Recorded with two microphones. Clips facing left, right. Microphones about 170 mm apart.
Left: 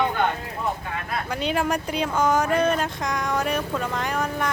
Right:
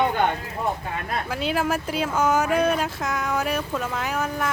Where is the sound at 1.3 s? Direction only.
5° right (ahead or behind).